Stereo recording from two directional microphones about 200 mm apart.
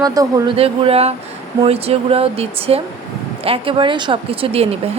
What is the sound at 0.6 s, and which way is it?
Speech, 30° right (ahead or behind).